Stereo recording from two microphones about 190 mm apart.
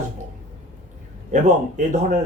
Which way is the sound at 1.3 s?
40° right (ahead or behind).